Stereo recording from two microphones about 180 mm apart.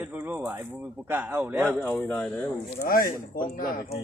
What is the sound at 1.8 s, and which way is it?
Speech, 10° left (ahead or behind).